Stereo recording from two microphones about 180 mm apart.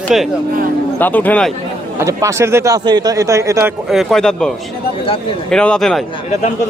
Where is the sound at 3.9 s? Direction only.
Centre (ahead or behind).